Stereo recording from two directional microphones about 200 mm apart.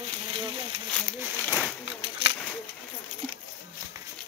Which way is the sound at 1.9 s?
30° right (ahead or behind).